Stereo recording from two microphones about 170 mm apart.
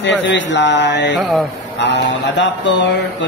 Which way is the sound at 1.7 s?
90° left.